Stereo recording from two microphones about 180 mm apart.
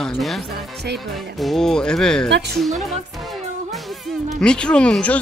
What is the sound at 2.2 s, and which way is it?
Speech, 70° right (ahead or behind).